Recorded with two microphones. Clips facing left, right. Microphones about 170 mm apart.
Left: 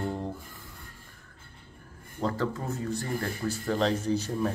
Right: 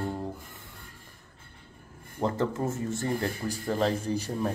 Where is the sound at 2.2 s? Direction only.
20° right (ahead or behind).